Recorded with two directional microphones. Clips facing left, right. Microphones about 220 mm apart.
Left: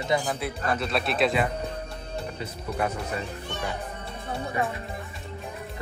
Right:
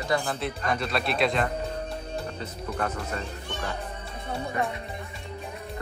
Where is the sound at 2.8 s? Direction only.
10° left (ahead or behind).